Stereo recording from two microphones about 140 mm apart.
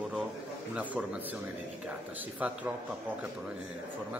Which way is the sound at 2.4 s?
10° right (ahead or behind).